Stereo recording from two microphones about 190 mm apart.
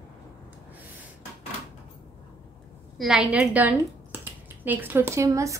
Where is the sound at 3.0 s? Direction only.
5° right (ahead or behind).